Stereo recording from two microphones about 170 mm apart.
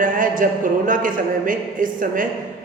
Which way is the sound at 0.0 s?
50° right (ahead or behind).